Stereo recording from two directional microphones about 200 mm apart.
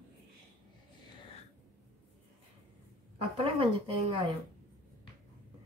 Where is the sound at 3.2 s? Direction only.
25° right (ahead or behind).